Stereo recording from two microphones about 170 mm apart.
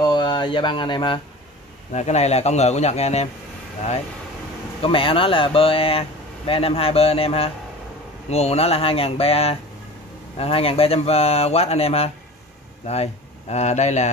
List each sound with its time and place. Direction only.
0.0 s speech: 25° left (ahead or behind)
1.9 s speech: 40° left (ahead or behind)
4.8 s speech: 30° left (ahead or behind)